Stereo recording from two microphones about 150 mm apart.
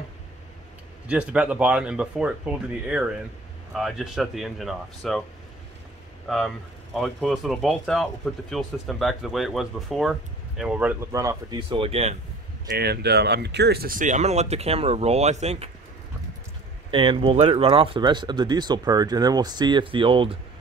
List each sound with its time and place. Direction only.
1.0 s speech: 10° right (ahead or behind)
6.2 s speech: centre (ahead or behind)
11.1 s speech: 20° right (ahead or behind)
11.7 s speech: 40° right (ahead or behind)
12.7 s speech: 90° right; by 15.7 s 45° right (ahead or behind)
16.9 s speech: 35° right (ahead or behind)